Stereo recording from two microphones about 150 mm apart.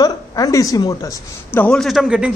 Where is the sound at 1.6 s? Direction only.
5° left (ahead or behind).